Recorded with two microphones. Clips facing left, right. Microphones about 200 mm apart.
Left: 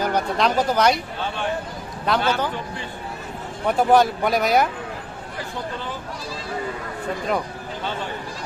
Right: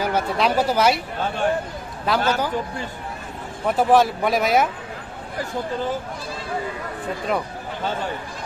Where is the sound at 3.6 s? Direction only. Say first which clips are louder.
Even; centre (ahead or behind).